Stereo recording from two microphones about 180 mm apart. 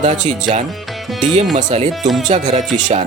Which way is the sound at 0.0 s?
40° right (ahead or behind).